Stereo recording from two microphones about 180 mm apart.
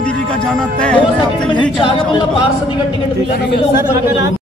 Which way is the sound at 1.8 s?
25° left (ahead or behind).